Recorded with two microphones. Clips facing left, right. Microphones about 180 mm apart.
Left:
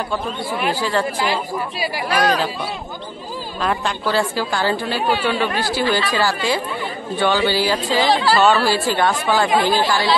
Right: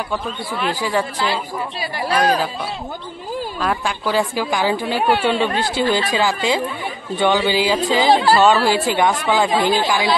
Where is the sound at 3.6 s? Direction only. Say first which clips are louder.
Left 2 dB; 10° right (ahead or behind).